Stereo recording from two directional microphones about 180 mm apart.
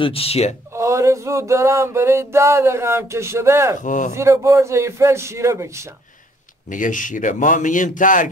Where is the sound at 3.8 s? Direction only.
45° left (ahead or behind).